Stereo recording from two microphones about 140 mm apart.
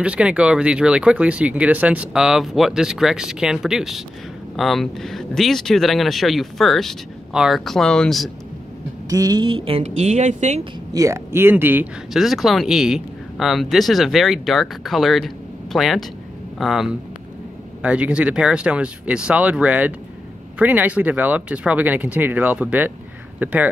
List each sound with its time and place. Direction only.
0.0 s speech: 10° right (ahead or behind)
9.1 s speech: 25° right (ahead or behind); by 10.6 s 55° right (ahead or behind)
10.6 s speech: 25° right (ahead or behind)
12.1 s speech: centre (ahead or behind)